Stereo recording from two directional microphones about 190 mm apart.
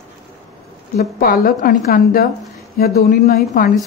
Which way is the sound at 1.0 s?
50° left (ahead or behind).